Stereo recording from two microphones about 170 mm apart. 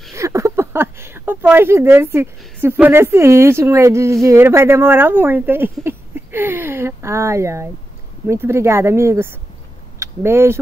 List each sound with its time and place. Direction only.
0.1 s speech: 15° right (ahead or behind)